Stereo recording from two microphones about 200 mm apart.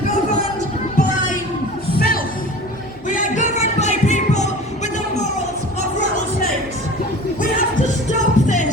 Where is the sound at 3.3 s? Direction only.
35° left (ahead or behind).